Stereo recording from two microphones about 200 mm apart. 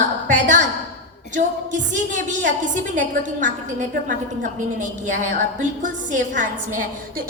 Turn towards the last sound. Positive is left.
turn(degrees=-40)  # may be behind; listen again after turning